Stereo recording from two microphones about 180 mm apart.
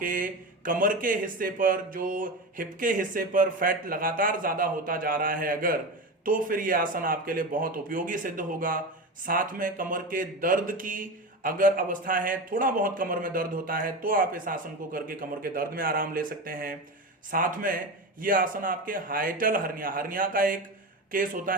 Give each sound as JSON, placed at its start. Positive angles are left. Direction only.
{"t": 0.0, "sound": "speech", "side_deg": -50}